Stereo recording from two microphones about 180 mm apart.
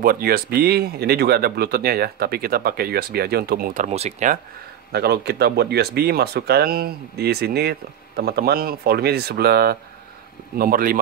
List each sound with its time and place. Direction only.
0.0 s speech: 55° right (ahead or behind)
4.9 s speech: 65° right (ahead or behind)